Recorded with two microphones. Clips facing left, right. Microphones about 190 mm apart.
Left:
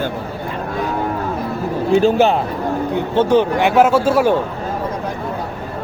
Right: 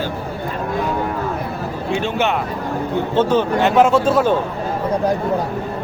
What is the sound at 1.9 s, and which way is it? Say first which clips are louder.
Speech: left 7 dB; 35° left (ahead or behind).